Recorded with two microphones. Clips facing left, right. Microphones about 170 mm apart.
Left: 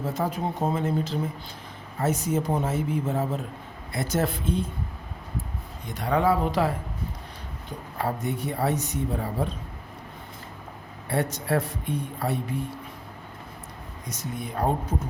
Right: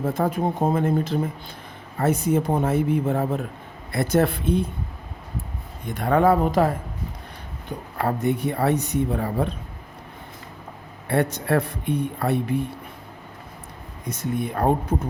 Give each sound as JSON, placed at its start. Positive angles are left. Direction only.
{"t": 0.0, "sound": "speech", "side_deg": -55}
{"t": 5.9, "sound": "speech", "side_deg": -55}
{"t": 7.9, "sound": "speech", "side_deg": -65}
{"t": 11.1, "sound": "speech", "side_deg": -65}
{"t": 14.1, "sound": "speech", "side_deg": -60}